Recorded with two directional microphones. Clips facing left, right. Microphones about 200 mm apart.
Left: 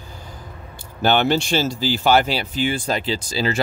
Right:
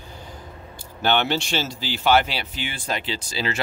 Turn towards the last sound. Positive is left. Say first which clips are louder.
# left 5 dB
turn(degrees=40)  # may be behind; listen again after turning